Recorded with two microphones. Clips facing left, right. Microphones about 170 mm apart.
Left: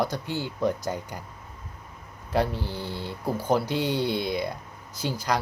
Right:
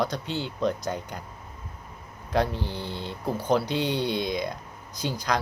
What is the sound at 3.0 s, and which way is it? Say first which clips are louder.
Speech: left 1 dB; 10° left (ahead or behind).